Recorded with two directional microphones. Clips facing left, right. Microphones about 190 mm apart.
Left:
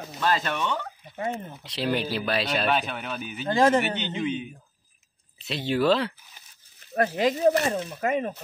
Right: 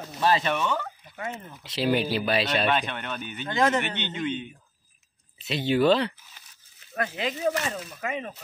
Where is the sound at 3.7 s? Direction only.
10° left (ahead or behind).